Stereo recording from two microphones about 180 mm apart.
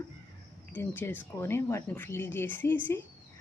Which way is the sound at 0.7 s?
10° left (ahead or behind).